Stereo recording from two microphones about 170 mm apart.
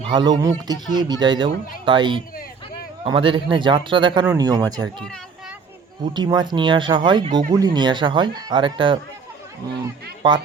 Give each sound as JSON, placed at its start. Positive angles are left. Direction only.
{"t": 0.0, "sound": "speech", "side_deg": -30}
{"t": 6.1, "sound": "speech", "side_deg": -25}